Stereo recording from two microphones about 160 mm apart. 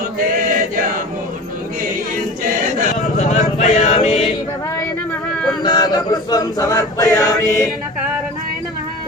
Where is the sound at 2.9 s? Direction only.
55° left (ahead or behind).